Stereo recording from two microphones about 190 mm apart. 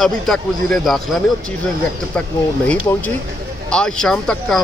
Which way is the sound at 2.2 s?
5° left (ahead or behind).